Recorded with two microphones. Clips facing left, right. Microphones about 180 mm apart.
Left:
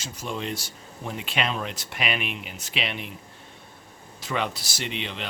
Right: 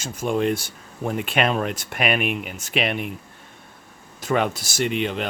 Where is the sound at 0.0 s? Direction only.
50° right (ahead or behind).